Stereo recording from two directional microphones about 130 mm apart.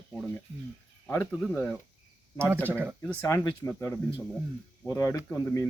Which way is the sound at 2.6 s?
15° right (ahead or behind).